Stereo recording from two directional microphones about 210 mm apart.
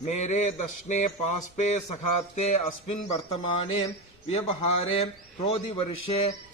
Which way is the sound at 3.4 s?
25° left (ahead or behind).